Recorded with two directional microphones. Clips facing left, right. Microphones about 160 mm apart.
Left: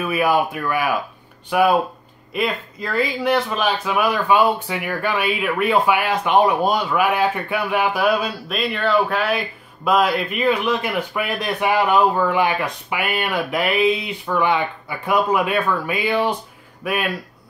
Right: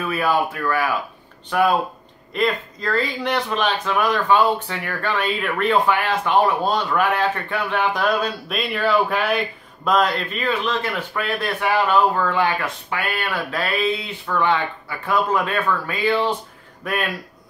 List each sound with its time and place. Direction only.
0.0 s speech: 10° left (ahead or behind)